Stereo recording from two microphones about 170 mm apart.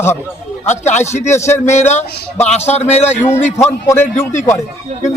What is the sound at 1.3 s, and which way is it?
Speech, 15° left (ahead or behind).